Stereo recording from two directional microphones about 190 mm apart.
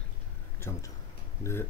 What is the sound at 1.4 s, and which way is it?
Music, 15° left (ahead or behind).